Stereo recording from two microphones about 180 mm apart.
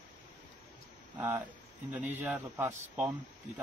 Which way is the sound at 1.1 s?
10° right (ahead or behind).